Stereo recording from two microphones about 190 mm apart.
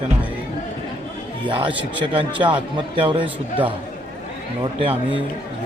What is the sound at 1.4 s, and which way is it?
A man's voice, 25° right (ahead or behind).